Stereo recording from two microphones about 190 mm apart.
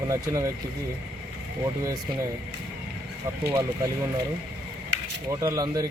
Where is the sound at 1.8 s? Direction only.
20° right (ahead or behind).